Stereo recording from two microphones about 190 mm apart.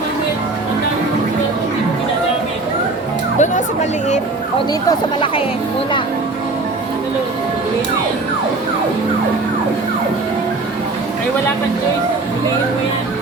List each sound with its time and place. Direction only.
3.3 s music: 40° left (ahead or behind)
4.9 s speech: 25° left (ahead or behind)